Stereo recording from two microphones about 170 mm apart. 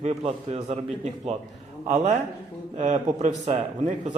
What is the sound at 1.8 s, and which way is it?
A man's voice, 40° right (ahead or behind).